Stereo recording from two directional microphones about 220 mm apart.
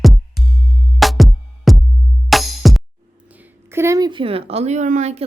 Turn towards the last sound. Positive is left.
turn(degrees=-30)  # may be behind; listen again after turning